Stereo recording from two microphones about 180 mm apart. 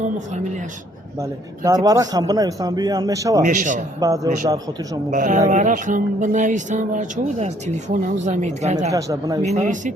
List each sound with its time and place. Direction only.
1.2 s speech: 20° right (ahead or behind)
3.4 s speech: 45° right (ahead or behind)
4.0 s a man's voice: 20° right (ahead or behind)
5.1 s speech: 45° right (ahead or behind)
8.9 s speech: 20° right (ahead or behind)
9.4 s speech: 40° right (ahead or behind)